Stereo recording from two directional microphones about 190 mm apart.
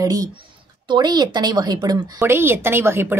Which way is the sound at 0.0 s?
20° right (ahead or behind).